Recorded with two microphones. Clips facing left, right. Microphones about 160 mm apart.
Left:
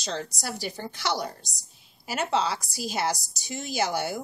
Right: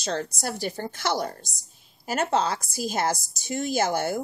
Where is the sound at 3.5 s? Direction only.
50° right (ahead or behind).